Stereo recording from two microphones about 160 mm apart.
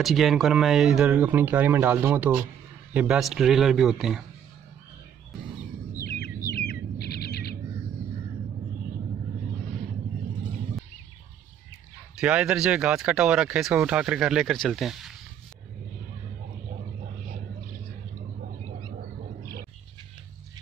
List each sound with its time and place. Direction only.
0.0 s speech: centre (ahead or behind)
6.2 s bird: 90° left
12.2 s speech: 5° right (ahead or behind)